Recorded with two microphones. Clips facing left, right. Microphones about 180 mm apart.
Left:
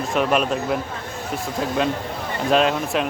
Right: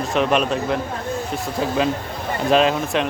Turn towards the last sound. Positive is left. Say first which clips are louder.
# right 1 dB
turn(degrees=0)  # may be behind; listen again after turning